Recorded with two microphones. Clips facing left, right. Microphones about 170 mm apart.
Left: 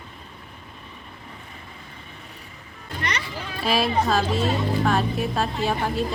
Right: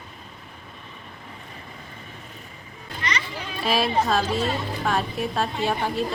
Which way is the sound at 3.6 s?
Centre (ahead or behind).